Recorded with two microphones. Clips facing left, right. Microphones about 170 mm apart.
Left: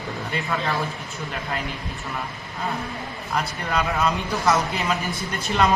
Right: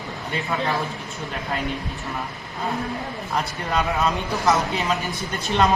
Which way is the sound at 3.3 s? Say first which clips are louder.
Even; centre (ahead or behind).